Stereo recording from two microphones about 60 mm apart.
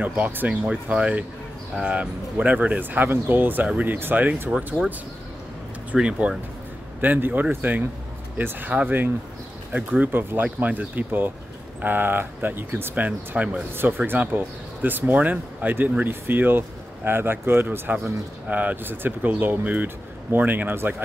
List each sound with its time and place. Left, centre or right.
0.0 s speech: right
0.5 s speech: centre
5.9 s speech: centre
7.0 s speech: right
9.8 s speech: right